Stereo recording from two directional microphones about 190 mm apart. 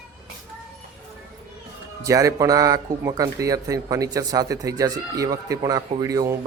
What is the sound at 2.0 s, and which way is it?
A man's voice, 15° right (ahead or behind).